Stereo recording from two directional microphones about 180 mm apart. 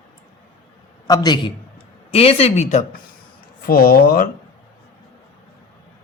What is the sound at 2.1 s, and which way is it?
Speech, 35° left (ahead or behind).